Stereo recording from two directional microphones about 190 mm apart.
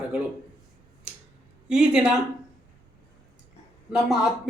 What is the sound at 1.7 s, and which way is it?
Speech, 5° right (ahead or behind).